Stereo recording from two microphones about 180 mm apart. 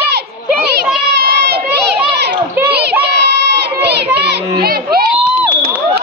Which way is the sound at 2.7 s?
65° right (ahead or behind).